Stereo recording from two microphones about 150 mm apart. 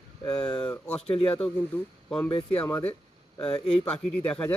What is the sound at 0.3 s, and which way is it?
Speech, 5° left (ahead or behind).